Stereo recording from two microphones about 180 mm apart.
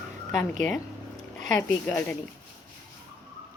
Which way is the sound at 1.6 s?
10° left (ahead or behind).